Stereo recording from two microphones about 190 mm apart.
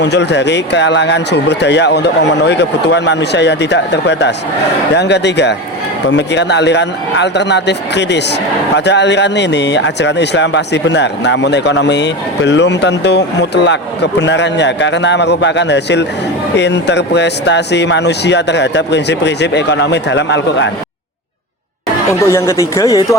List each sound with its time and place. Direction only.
0.0 s a man's voice: 65° left (ahead or behind)
22.3 s speech: 15° left (ahead or behind)